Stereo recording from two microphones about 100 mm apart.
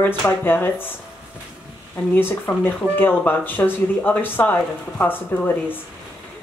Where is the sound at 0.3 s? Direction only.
20° left (ahead or behind).